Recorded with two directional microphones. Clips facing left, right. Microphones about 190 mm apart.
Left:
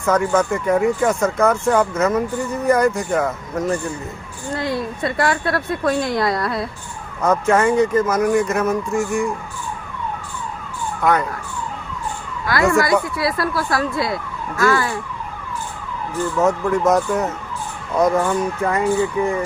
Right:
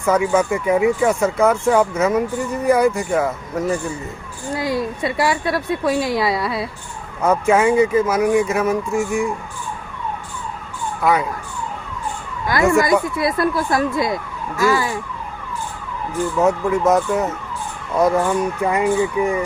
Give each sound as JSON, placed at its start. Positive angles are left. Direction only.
{"t": 0.0, "sound": "speech", "side_deg": -10}
{"t": 11.0, "sound": "speech", "side_deg": -5}
{"t": 12.5, "sound": "speech", "side_deg": -15}
{"t": 16.4, "sound": "speech", "side_deg": -10}